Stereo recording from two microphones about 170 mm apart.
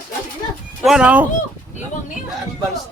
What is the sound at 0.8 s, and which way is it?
Speech, 5° right (ahead or behind).